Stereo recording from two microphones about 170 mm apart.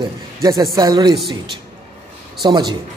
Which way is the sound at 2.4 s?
25° right (ahead or behind).